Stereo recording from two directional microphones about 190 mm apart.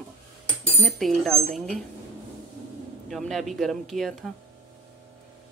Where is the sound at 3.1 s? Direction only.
Centre (ahead or behind).